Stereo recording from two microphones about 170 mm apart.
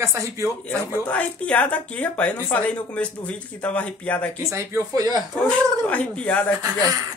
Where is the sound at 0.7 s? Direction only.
10° left (ahead or behind).